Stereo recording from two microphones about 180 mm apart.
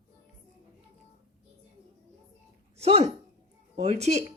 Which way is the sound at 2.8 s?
35° right (ahead or behind).